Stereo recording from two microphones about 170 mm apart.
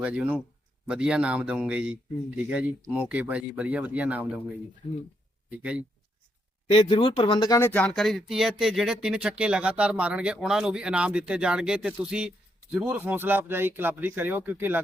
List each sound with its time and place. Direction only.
0.0 s speech: 5° right (ahead or behind)
5.5 s speech: 5° right (ahead or behind)
6.7 s speech: 30° left (ahead or behind)
7.7 s speech: 5° left (ahead or behind); by 14.8 s 10° right (ahead or behind)